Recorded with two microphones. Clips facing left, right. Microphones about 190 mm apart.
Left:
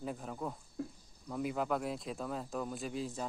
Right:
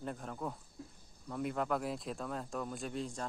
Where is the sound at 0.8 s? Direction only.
75° left (ahead or behind).